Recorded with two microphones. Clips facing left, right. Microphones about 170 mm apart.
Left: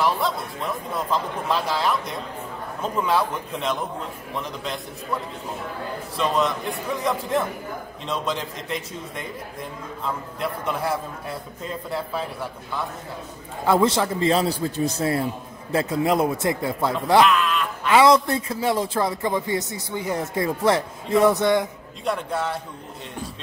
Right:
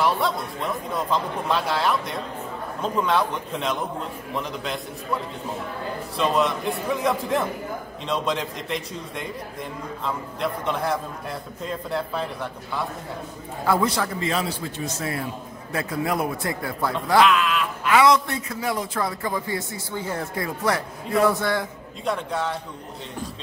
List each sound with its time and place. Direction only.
0.0 s a man's voice: centre (ahead or behind)
6.1 s a man's voice: centre (ahead or behind)
13.7 s a man's voice: 25° left (ahead or behind)
17.2 s a man's voice: centre (ahead or behind)
17.8 s a man's voice: 30° left (ahead or behind)
22.0 s a man's voice: 5° left (ahead or behind)